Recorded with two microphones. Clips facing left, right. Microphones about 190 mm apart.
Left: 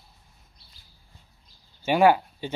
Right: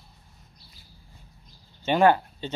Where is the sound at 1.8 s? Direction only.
10° left (ahead or behind).